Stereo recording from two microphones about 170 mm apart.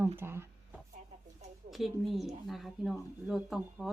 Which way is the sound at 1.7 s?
Centre (ahead or behind).